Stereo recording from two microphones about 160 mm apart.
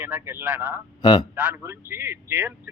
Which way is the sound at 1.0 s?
25° left (ahead or behind).